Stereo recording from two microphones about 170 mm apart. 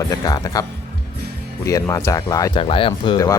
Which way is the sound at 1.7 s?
20° left (ahead or behind).